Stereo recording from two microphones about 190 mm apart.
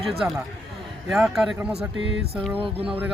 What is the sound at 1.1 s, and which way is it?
Speech, 5° right (ahead or behind).